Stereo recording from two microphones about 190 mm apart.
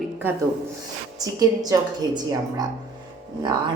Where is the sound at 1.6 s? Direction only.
20° right (ahead or behind).